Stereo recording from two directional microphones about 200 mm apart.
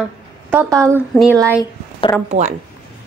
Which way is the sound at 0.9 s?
5° left (ahead or behind).